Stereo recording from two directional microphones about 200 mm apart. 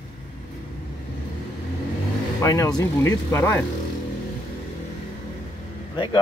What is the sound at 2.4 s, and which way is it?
Speech, 15° left (ahead or behind).